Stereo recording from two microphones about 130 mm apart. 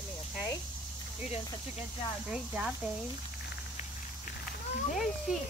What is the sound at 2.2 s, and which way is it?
Speech, 5° right (ahead or behind).